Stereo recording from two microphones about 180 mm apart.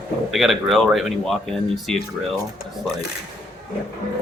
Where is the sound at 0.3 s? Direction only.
Centre (ahead or behind).